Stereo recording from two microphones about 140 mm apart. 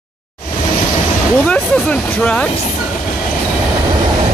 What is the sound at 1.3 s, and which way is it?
Speech, 10° left (ahead or behind).